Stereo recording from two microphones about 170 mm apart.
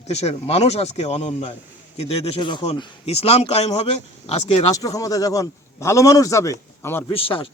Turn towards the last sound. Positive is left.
turn(degrees=35)  # may be behind; listen again after turning